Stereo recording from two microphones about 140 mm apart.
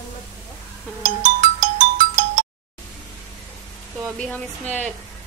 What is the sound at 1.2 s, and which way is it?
Music, 70° right (ahead or behind).